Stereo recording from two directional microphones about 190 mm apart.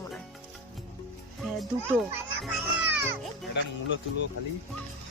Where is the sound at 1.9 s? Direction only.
5° right (ahead or behind).